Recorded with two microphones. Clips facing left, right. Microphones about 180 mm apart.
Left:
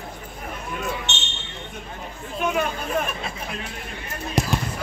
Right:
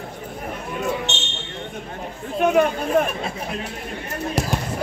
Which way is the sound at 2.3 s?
55° right (ahead or behind).